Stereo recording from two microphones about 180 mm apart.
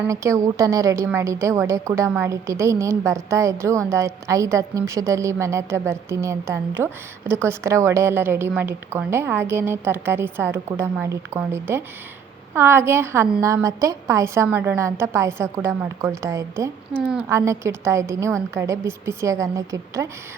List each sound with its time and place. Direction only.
0.1 s a woman's voice: 15° right (ahead or behind)